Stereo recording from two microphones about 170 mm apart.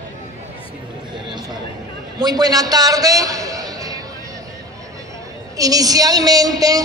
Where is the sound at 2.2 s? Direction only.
25° right (ahead or behind).